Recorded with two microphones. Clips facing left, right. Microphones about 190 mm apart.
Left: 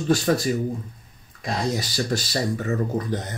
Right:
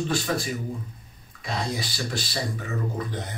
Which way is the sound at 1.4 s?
45° left (ahead or behind).